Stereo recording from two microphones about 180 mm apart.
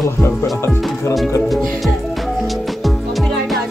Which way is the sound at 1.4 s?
Centre (ahead or behind).